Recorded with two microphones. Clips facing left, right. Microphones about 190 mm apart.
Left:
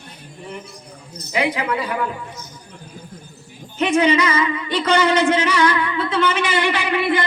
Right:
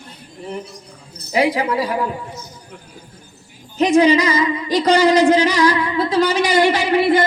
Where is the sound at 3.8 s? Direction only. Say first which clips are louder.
Right 4 dB; 35° right (ahead or behind).